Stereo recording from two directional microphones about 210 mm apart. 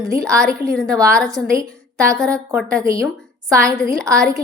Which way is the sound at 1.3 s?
15° right (ahead or behind).